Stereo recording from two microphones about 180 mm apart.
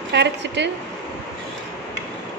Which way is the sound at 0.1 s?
70° right (ahead or behind).